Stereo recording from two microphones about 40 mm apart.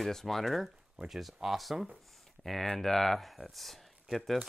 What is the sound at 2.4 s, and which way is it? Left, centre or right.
Speech, centre.